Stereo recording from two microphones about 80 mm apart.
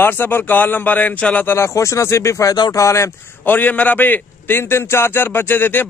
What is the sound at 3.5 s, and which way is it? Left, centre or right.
A man's voice, left.